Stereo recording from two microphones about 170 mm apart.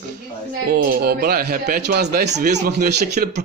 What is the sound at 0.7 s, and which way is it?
A man's voice, 60° right (ahead or behind).